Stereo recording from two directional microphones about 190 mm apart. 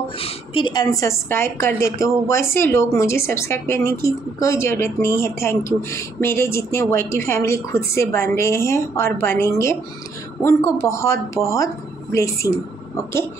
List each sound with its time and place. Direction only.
0.2 s a woman's voice: 25° left (ahead or behind)